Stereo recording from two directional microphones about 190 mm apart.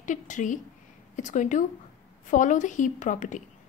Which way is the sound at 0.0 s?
40° left (ahead or behind).